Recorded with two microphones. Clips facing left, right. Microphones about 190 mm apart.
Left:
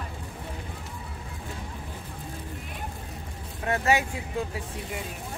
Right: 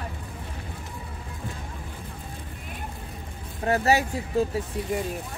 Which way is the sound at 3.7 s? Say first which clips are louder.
Right 3 dB; 35° right (ahead or behind).